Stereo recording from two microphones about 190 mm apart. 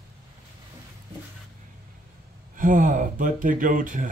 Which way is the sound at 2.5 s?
45° right (ahead or behind).